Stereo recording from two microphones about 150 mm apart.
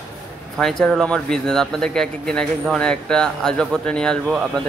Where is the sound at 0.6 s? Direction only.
5° left (ahead or behind).